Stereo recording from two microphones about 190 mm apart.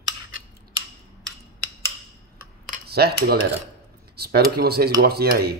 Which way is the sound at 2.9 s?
55° right (ahead or behind).